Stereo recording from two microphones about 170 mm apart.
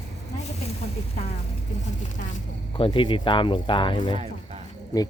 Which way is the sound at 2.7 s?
30° left (ahead or behind).